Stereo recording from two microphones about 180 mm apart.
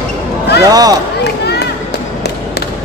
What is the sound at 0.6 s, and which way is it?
Speech, 20° right (ahead or behind).